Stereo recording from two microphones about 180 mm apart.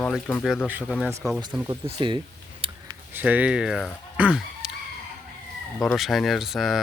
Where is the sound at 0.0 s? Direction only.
5° left (ahead or behind).